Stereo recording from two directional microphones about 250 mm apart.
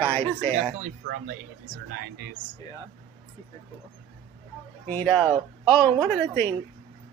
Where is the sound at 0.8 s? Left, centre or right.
Right.